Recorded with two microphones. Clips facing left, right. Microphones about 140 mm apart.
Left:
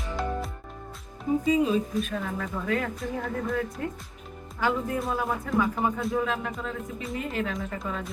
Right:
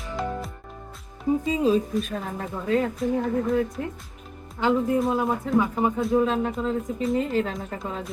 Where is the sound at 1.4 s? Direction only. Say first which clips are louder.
Even; 30° right (ahead or behind).